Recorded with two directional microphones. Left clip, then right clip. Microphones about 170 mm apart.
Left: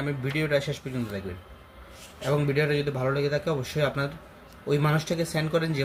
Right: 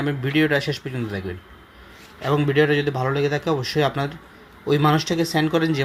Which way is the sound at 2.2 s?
25° right (ahead or behind).